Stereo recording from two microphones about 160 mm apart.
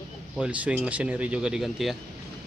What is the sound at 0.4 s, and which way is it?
Speech, 5° right (ahead or behind).